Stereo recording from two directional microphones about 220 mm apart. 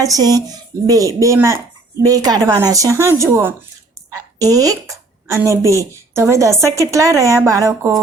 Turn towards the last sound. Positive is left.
turn(degrees=-15)  # may be behind; listen again after turning